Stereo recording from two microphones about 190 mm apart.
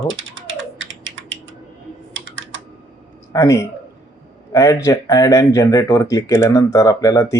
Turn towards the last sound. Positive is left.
turn(degrees=15)  # may be behind; listen again after turning